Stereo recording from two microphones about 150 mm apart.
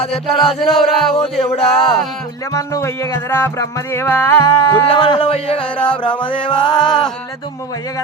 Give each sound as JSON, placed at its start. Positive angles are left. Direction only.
{"t": 0.0, "sound": "speech", "side_deg": 40}
{"t": 0.8, "sound": "music", "side_deg": 0}
{"t": 1.1, "sound": "speech", "side_deg": 40}
{"t": 2.5, "sound": "music", "side_deg": 20}
{"t": 4.9, "sound": "speech", "side_deg": 35}
{"t": 5.7, "sound": "music", "side_deg": 10}
{"t": 6.2, "sound": "music", "side_deg": 35}